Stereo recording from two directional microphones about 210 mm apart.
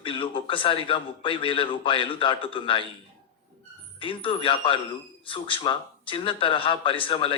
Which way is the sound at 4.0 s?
25° left (ahead or behind).